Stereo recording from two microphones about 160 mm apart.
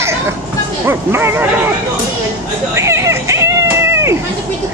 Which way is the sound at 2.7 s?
20° right (ahead or behind).